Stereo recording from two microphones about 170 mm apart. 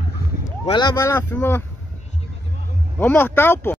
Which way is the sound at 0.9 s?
15° left (ahead or behind).